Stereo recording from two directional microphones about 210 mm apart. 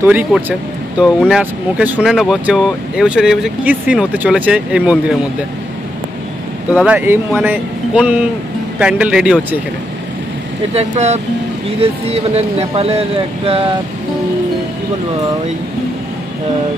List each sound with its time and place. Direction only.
0.0 s speech: 10° right (ahead or behind)
6.7 s speech: 5° right (ahead or behind)
10.7 s speech: 30° right (ahead or behind)